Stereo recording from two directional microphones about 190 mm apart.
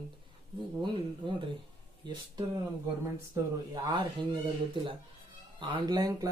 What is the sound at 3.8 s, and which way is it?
Speech, 25° right (ahead or behind).